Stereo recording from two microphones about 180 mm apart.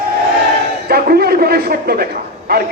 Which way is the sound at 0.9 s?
60° right (ahead or behind).